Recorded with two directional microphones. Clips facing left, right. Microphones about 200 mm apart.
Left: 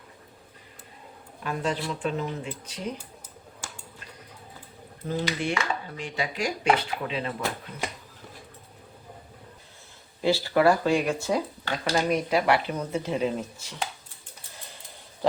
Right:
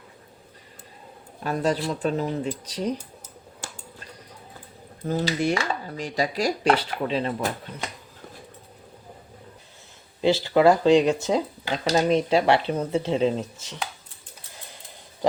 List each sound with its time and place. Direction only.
1.5 s speech: 40° right (ahead or behind)
5.0 s speech: 40° right (ahead or behind)
10.2 s speech: 20° right (ahead or behind)